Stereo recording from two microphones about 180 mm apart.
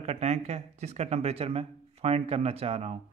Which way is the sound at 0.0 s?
35° right (ahead or behind).